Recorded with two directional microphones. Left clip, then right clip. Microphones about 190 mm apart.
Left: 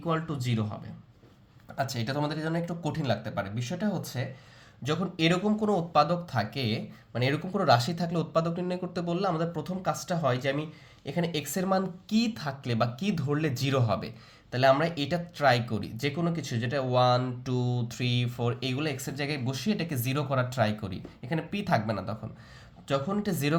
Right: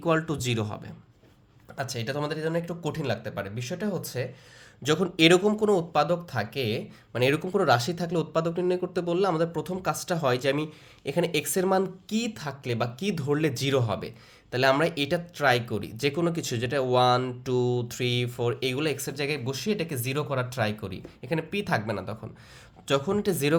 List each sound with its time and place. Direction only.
0.0 s speech: 45° right (ahead or behind)
1.7 s speech: 15° right (ahead or behind)
4.8 s speech: 35° right (ahead or behind); by 22.1 s 15° right (ahead or behind)
22.9 s speech: 30° right (ahead or behind)